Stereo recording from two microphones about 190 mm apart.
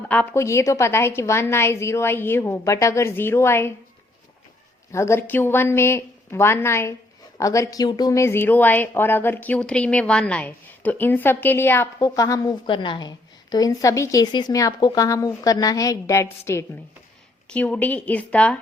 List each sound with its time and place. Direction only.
0.1 s a woman's voice: 10° left (ahead or behind)
4.9 s a woman's voice: 15° left (ahead or behind)